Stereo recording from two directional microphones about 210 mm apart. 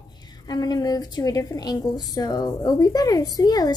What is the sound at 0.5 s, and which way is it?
A woman's voice, 20° left (ahead or behind).